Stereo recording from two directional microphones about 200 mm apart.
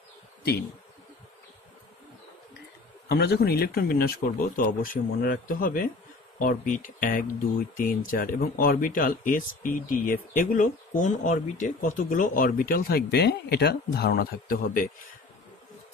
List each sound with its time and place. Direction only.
3.1 s speech: 50° left (ahead or behind)